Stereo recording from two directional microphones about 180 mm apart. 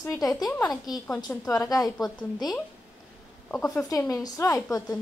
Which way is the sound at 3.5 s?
15° left (ahead or behind).